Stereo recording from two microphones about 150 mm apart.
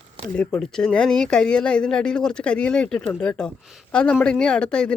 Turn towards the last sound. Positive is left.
turn(degrees=5)  # may be behind; listen again after turning